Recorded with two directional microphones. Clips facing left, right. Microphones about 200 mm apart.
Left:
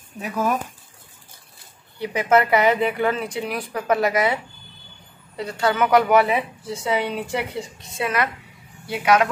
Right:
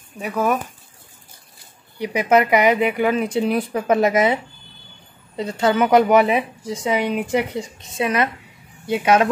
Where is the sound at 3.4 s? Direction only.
25° right (ahead or behind).